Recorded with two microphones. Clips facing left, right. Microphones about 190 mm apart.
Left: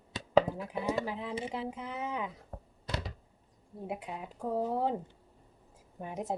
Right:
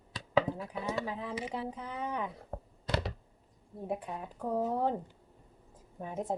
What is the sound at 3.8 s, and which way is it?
Speech, 10° left (ahead or behind).